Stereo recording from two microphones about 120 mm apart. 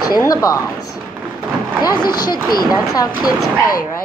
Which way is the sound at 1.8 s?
35° left (ahead or behind).